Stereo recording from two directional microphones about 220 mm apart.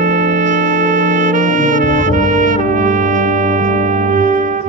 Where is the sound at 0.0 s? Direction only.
35° right (ahead or behind).